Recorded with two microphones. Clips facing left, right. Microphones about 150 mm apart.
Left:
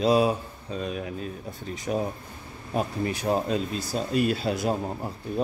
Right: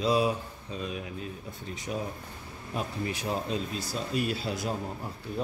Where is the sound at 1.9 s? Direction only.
55° left (ahead or behind).